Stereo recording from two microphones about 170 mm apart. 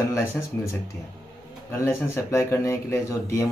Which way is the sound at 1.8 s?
15° left (ahead or behind).